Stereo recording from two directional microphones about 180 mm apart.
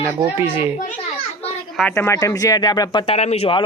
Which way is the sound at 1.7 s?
10° left (ahead or behind).